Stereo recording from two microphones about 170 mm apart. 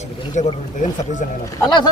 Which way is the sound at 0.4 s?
45° left (ahead or behind).